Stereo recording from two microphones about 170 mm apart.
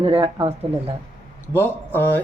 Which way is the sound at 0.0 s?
35° right (ahead or behind).